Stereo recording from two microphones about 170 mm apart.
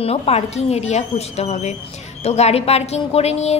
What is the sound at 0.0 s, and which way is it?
A woman's voice, 35° left (ahead or behind).